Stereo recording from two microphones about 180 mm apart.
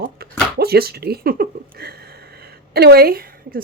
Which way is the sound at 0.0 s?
60° right (ahead or behind).